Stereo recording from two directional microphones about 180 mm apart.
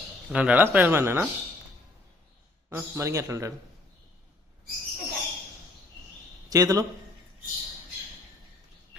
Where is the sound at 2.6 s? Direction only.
15° right (ahead or behind).